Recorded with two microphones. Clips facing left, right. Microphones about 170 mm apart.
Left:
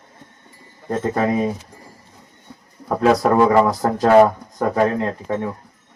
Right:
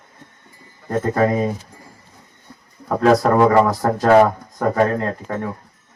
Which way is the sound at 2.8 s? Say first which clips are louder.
Right 1 dB; 5° left (ahead or behind).